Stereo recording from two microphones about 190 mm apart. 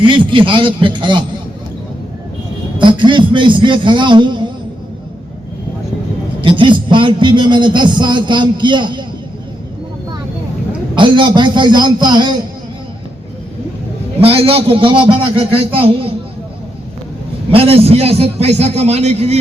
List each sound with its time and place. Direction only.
0.0 s a man's voice: 25° right (ahead or behind)
2.7 s a man's voice: 25° right (ahead or behind)
6.4 s a man's voice: 25° right (ahead or behind)
10.7 s a man's voice: 25° right (ahead or behind)
14.2 s a man's voice: 30° right (ahead or behind)
17.5 s a man's voice: 30° right (ahead or behind)